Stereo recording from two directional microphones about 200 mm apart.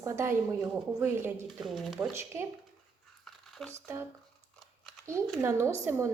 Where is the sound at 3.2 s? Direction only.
Centre (ahead or behind).